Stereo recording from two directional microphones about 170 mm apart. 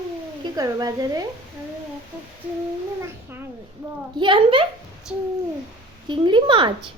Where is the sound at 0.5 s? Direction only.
20° right (ahead or behind).